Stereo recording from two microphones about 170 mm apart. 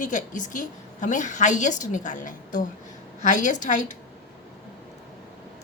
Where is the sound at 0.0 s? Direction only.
50° left (ahead or behind).